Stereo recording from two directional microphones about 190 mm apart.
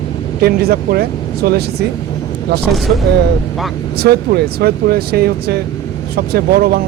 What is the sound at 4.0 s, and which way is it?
Speech, 55° right (ahead or behind).